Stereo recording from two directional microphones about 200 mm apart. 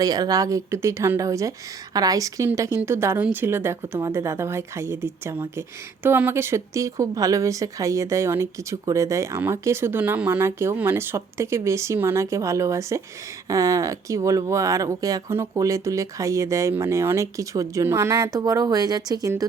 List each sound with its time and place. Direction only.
0.0 s a woman's voice: 20° right (ahead or behind)